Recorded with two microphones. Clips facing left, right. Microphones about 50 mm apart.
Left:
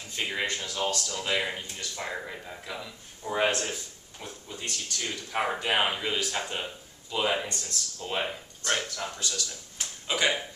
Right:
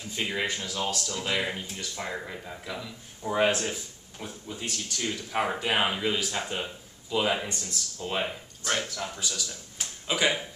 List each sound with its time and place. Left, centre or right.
0.1 s speech: centre